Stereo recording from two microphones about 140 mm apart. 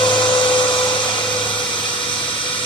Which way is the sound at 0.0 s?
35° left (ahead or behind).